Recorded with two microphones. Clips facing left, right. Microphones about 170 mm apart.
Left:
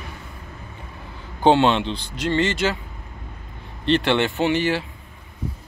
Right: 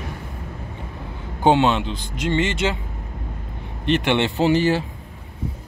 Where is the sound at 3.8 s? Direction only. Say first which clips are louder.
Even; 15° right (ahead or behind).